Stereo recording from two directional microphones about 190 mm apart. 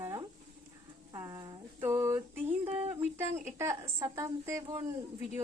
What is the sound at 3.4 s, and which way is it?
A woman's voice, 15° right (ahead or behind).